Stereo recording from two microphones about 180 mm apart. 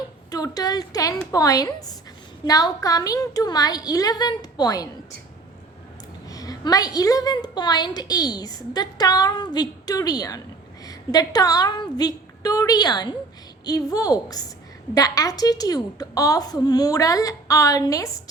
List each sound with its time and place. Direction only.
0.3 s a woman's voice: 20° left (ahead or behind)
6.2 s a woman's voice: 20° left (ahead or behind)